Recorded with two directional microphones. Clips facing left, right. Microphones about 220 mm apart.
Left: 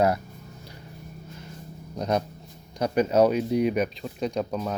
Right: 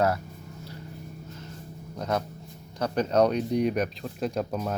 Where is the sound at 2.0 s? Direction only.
20° left (ahead or behind).